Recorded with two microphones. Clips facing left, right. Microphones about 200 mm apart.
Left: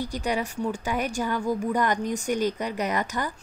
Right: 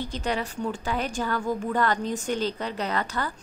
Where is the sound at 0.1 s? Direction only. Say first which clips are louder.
Left 1 dB; 15° left (ahead or behind).